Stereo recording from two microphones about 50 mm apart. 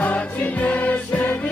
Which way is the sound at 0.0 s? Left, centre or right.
Left.